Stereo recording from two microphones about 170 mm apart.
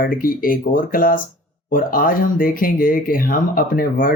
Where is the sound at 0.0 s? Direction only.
55° left (ahead or behind).